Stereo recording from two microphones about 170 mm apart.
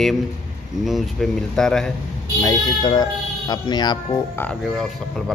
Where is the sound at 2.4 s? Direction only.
25° left (ahead or behind).